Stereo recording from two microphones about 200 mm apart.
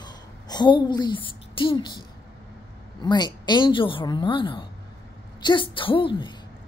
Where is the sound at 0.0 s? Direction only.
20° left (ahead or behind).